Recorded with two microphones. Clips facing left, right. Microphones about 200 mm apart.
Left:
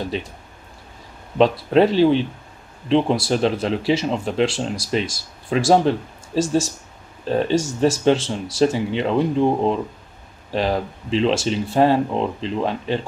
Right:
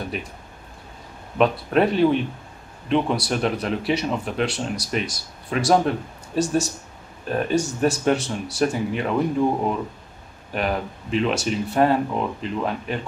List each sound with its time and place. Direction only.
0.0 s speech: 30° left (ahead or behind)
1.4 s speech: 30° left (ahead or behind)